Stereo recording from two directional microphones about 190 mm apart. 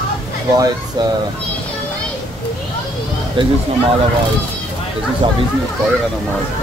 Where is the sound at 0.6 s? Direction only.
20° right (ahead or behind).